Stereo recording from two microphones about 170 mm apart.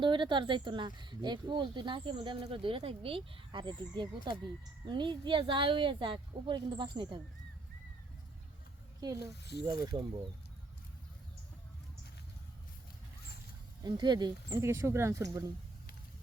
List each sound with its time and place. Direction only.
0.0 s speech: 30° right (ahead or behind)
9.4 s speech: 75° left (ahead or behind)
9.6 s speech: 25° right (ahead or behind)
13.8 s speech: 25° right (ahead or behind)